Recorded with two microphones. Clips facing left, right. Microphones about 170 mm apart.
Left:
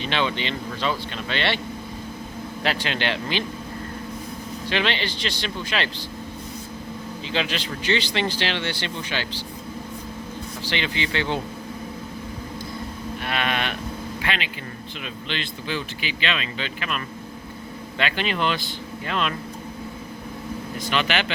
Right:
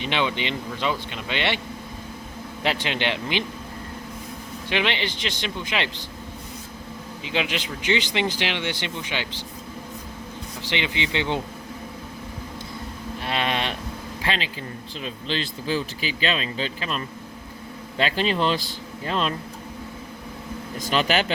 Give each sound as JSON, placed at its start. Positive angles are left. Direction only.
{"t": 0.0, "sound": "speech", "side_deg": -15}
{"t": 2.6, "sound": "speech", "side_deg": -20}
{"t": 4.7, "sound": "speech", "side_deg": -15}
{"t": 7.3, "sound": "speech", "side_deg": -15}
{"t": 10.7, "sound": "speech", "side_deg": -20}
{"t": 13.2, "sound": "a man's voice", "side_deg": -30}
{"t": 20.9, "sound": "speech", "side_deg": -40}